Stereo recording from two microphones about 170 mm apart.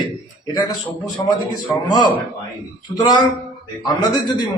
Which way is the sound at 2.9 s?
25° left (ahead or behind).